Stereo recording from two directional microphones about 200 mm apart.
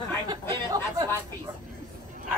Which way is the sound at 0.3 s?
20° right (ahead or behind).